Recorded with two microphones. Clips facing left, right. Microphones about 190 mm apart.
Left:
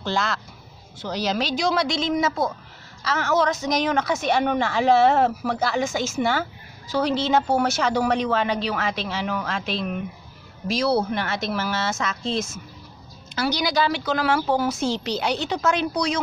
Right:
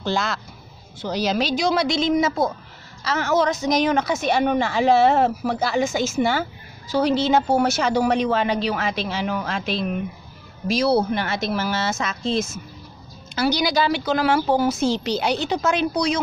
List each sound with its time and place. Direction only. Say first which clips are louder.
0.0 s a woman's voice: right 1 dB; 10° right (ahead or behind)